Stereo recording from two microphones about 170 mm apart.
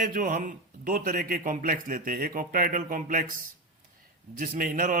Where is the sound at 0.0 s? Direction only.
50° right (ahead or behind).